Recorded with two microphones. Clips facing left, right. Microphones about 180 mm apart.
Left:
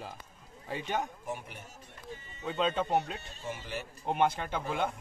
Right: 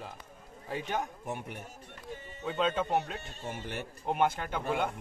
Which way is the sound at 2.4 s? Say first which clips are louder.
Even; centre (ahead or behind).